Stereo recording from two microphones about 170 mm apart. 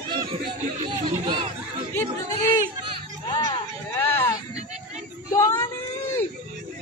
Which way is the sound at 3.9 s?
15° left (ahead or behind).